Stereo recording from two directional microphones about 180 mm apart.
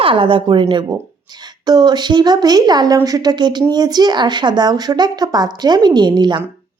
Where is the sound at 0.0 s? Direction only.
30° right (ahead or behind).